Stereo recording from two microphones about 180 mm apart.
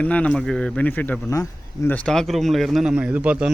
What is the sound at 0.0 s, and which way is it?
Speech, 10° left (ahead or behind).